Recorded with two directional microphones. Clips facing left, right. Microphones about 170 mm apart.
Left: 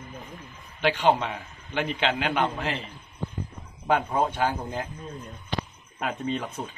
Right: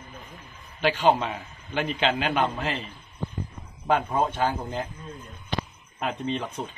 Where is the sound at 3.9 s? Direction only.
Centre (ahead or behind).